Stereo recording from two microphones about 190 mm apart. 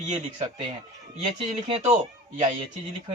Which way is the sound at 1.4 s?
30° right (ahead or behind).